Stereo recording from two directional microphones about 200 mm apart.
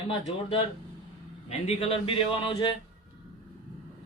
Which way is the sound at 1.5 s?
30° left (ahead or behind).